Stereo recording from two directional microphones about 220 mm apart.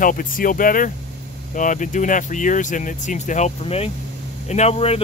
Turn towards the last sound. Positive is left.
turn(degrees=25)  # may be behind; listen again after turning